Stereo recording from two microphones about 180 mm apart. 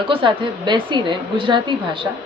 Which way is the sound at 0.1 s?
30° right (ahead or behind).